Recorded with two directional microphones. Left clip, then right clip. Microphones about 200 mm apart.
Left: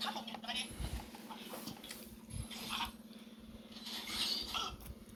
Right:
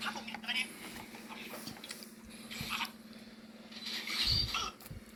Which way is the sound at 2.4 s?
5° left (ahead or behind).